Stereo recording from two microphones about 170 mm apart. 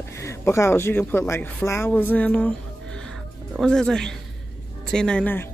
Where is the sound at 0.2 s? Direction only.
15° left (ahead or behind).